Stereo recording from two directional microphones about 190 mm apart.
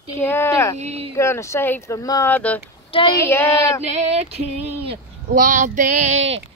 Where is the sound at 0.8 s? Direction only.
35° right (ahead or behind).